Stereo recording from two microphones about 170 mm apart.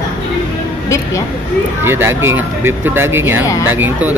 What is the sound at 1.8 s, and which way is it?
Speech, 15° right (ahead or behind).